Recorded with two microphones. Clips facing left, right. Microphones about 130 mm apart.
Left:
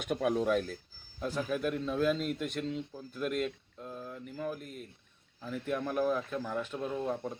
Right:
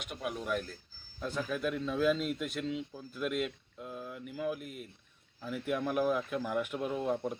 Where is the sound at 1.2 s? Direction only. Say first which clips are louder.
Left 2 dB; centre (ahead or behind).